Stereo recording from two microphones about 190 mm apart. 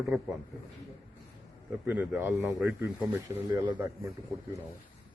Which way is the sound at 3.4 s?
20° right (ahead or behind).